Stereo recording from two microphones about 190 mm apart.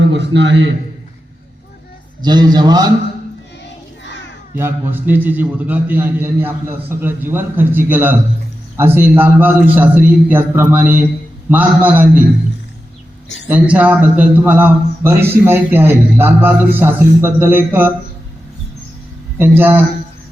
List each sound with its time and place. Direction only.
0.1 s a man's voice: 70° right (ahead or behind)
2.2 s a man's voice: 20° right (ahead or behind)
4.5 s a man's voice: 10° right (ahead or behind)
13.5 s a man's voice: 10° right (ahead or behind)
19.4 s a man's voice: 10° right (ahead or behind)